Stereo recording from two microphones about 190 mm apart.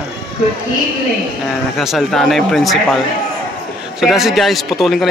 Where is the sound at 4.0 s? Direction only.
Centre (ahead or behind).